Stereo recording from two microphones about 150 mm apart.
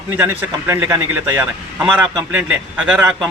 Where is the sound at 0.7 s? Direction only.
15° right (ahead or behind).